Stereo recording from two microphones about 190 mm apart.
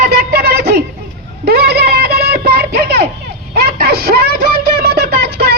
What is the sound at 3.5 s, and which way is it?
Music, 55° right (ahead or behind).